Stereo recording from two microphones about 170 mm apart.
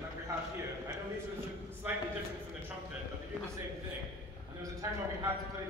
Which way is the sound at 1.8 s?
10° right (ahead or behind).